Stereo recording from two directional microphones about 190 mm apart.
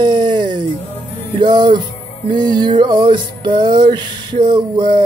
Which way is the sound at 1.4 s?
25° right (ahead or behind).